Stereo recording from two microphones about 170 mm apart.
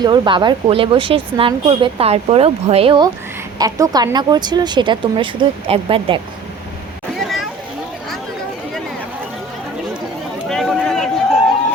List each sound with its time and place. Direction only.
0.0 s speech: 25° right (ahead or behind)
3.6 s speech: 20° right (ahead or behind)
7.2 s a sound: centre (ahead or behind)
10.5 s run: centre (ahead or behind)